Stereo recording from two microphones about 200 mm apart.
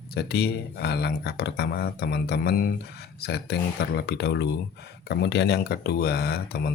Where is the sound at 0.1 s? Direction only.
50° left (ahead or behind).